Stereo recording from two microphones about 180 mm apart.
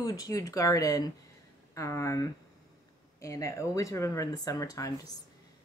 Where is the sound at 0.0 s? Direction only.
20° left (ahead or behind).